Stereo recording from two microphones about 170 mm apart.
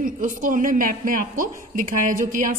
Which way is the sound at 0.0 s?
50° right (ahead or behind).